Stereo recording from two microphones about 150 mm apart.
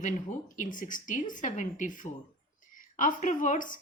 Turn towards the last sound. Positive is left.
turn(degrees=60)  # may be behind; listen again after turning